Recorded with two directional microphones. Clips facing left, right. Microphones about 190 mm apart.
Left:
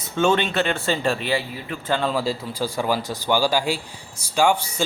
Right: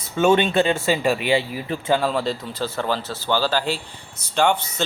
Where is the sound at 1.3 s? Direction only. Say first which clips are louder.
Right 4 dB; 25° right (ahead or behind).